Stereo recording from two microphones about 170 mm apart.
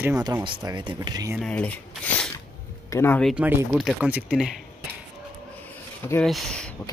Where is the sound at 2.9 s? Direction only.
15° left (ahead or behind).